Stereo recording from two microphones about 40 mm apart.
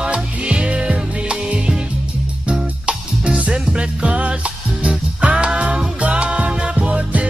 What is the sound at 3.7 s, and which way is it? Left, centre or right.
Music, right.